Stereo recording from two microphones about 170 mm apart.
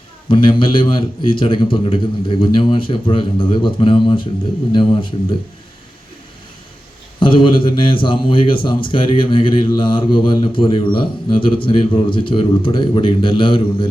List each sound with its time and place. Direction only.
0.3 s a man's voice: 30° left (ahead or behind)
7.2 s speech: 30° left (ahead or behind)